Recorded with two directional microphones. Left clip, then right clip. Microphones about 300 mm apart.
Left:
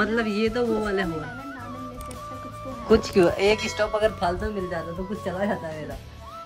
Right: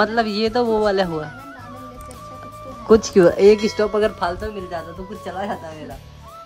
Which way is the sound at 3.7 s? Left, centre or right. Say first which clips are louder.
Right 4 dB; right.